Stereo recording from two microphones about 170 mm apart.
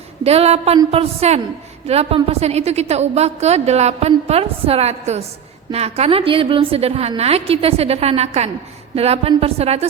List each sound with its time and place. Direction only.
0.3 s a woman's voice: 35° right (ahead or behind)